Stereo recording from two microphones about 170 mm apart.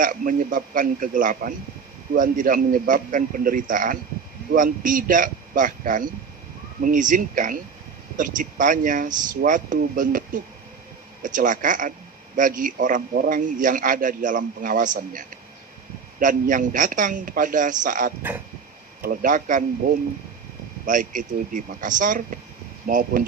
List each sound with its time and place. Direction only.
0.0 s a man's voice: 55° right (ahead or behind)
20.8 s a man's voice: 50° right (ahead or behind)